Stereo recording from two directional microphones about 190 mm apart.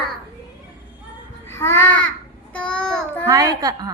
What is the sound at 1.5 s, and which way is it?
Babbling, 10° left (ahead or behind).